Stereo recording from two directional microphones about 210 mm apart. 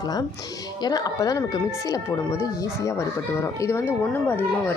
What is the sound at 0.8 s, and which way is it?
A woman's voice, 20° left (ahead or behind).